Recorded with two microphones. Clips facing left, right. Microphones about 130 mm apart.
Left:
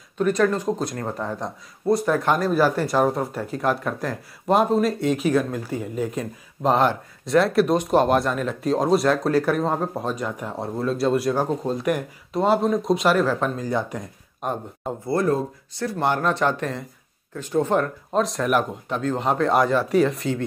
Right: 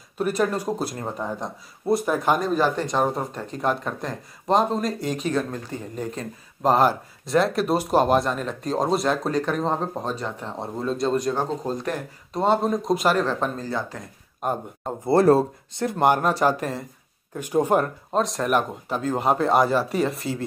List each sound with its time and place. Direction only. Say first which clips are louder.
0.2 s speech: left 3 dB; 10° right (ahead or behind)
2.5 s speech: left 2 dB; 10° left (ahead or behind)
6.6 s speech: right 1 dB; 5° right (ahead or behind)
13.7 s speech: left 4 dB; 20° left (ahead or behind)
14.4 s speech: right 1 dB; 5° right (ahead or behind)
16.1 s speech: right 1 dB; 10° right (ahead or behind)
18.1 s speech: left 1 dB; centre (ahead or behind)